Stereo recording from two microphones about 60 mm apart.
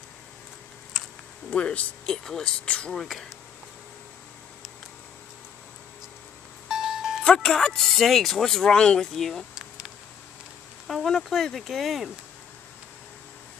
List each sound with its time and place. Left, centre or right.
1.5 s speech: left
2.0 s speech: centre
3.0 s speech: centre
6.7 s music: centre
7.2 s speech: centre
9.6 s a sound: centre
10.9 s speech: centre